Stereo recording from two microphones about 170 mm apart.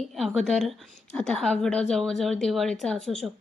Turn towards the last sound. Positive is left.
turn(degrees=5)  # may be behind; listen again after turning